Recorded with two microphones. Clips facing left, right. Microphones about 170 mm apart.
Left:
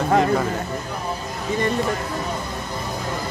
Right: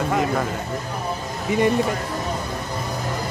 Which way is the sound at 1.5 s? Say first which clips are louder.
Right 4 dB; 10° right (ahead or behind).